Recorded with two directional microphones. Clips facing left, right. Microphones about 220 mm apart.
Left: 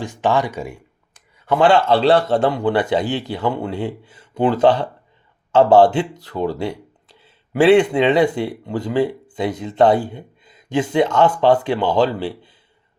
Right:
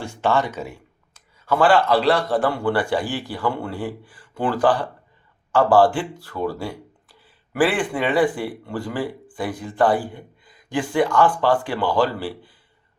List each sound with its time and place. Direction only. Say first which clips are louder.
0.0 s speech: left 2 dB; 15° left (ahead or behind)